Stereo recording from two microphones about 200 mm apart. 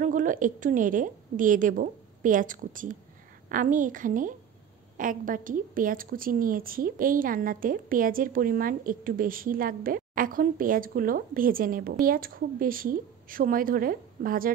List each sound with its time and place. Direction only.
0.0 s a woman's voice: 40° right (ahead or behind)